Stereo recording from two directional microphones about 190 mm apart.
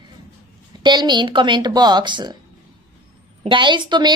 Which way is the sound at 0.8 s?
25° right (ahead or behind).